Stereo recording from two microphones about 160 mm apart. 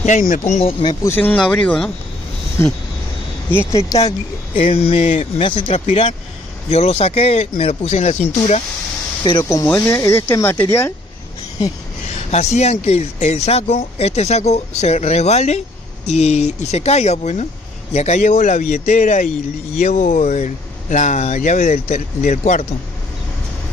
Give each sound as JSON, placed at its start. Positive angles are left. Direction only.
{"t": 0.0, "sound": "speech", "side_deg": 55}
{"t": 0.5, "sound": "speech", "side_deg": 40}
{"t": 1.0, "sound": "speech", "side_deg": 15}
{"t": 4.6, "sound": "speech", "side_deg": 35}
{"t": 9.2, "sound": "speech", "side_deg": 25}
{"t": 12.3, "sound": "speech", "side_deg": 45}